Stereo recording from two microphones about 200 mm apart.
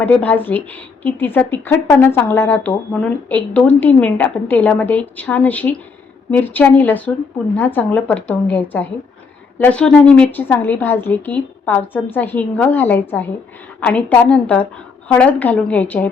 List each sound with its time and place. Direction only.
0.0 s a woman's voice: 10° left (ahead or behind)